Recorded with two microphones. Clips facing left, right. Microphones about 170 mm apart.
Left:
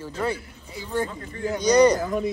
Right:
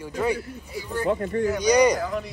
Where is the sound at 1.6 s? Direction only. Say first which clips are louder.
Left 2 dB; 10° right (ahead or behind).